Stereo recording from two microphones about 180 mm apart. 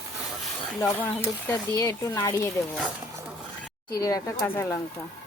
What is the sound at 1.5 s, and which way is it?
Speech, 15° left (ahead or behind).